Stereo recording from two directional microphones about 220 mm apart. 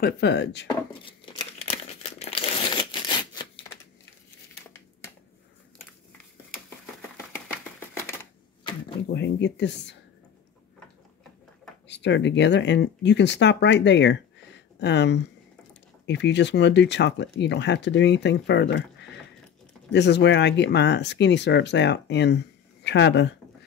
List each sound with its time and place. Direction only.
0.0 s speech: 50° left (ahead or behind)
0.7 s crumpling: 25° left (ahead or behind)
6.5 s typewriter: 5° left (ahead or behind)
9.1 s speech: 50° left (ahead or behind)
11.9 s speech: 55° left (ahead or behind)